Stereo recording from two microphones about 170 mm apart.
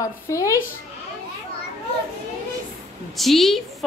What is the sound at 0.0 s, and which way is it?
Speech, 20° left (ahead or behind).